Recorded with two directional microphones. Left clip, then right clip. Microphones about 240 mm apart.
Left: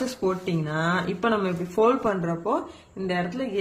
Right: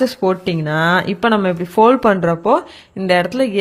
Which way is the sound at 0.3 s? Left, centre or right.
Right.